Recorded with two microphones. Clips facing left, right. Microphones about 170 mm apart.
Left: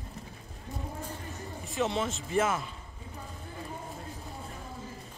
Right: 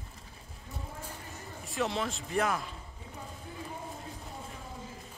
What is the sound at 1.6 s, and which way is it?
Speech, centre (ahead or behind).